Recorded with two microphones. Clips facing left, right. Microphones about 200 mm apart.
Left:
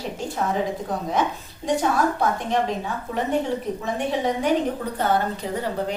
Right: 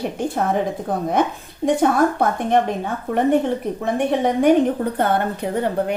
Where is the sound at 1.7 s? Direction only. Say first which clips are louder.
Right 5 dB; 55° right (ahead or behind).